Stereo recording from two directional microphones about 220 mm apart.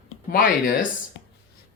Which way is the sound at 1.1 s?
55° left (ahead or behind).